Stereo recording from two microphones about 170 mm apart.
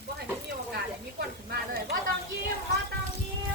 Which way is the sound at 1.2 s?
70° right (ahead or behind).